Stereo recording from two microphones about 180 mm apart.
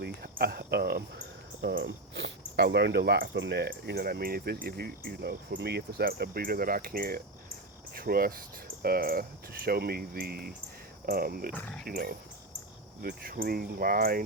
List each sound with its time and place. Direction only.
0.0 s cricket: 60° right (ahead or behind)
1.6 s speech: 90° right; by 11.5 s 60° right (ahead or behind)
11.5 s speech: 10° left (ahead or behind)
11.9 s speech: 55° right (ahead or behind)